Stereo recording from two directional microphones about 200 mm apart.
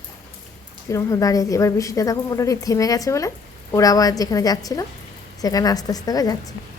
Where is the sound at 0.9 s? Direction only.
15° left (ahead or behind).